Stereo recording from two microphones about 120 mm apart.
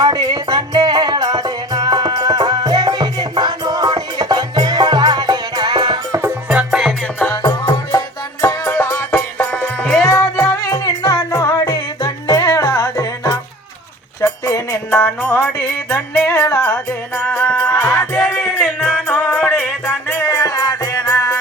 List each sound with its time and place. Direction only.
0.0 s music: 35° right (ahead or behind)
6.5 s music: 5° right (ahead or behind)
7.4 s music: 40° left (ahead or behind); by 9.0 s 20° left (ahead or behind)
9.1 s music: 10° left (ahead or behind)
10.0 s music: 25° left (ahead or behind)
17.2 s music: 15° left (ahead or behind)
18.6 s music: centre (ahead or behind); by 21.3 s 25° left (ahead or behind)